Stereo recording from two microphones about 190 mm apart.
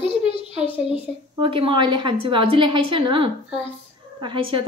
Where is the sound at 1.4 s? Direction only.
25° right (ahead or behind).